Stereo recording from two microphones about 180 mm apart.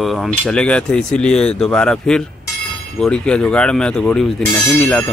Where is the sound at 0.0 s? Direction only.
Centre (ahead or behind).